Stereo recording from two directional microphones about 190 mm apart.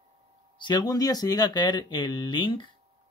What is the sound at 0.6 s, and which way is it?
Speech, 20° left (ahead or behind).